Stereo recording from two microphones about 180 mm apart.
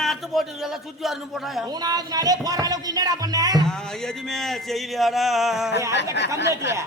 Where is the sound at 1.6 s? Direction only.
20° right (ahead or behind).